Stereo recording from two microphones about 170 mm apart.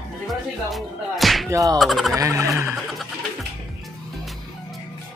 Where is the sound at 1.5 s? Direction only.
20° right (ahead or behind).